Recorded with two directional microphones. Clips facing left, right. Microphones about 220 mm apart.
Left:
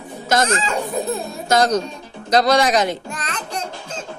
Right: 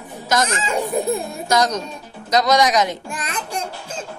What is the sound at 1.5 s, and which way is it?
Speech, 30° left (ahead or behind).